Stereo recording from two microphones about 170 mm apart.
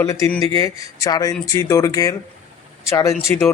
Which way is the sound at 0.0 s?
15° left (ahead or behind).